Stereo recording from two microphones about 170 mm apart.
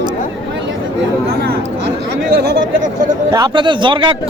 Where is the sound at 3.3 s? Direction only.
25° right (ahead or behind).